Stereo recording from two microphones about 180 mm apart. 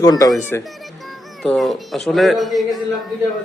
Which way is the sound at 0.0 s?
20° left (ahead or behind).